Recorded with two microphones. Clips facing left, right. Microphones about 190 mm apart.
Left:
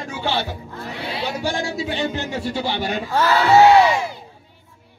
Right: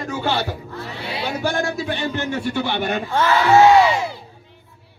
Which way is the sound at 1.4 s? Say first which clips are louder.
Right 2 dB; 55° right (ahead or behind).